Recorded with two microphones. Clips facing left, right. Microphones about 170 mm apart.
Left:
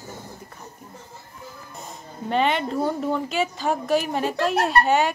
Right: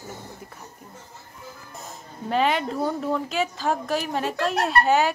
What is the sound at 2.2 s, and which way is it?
Speech, centre (ahead or behind).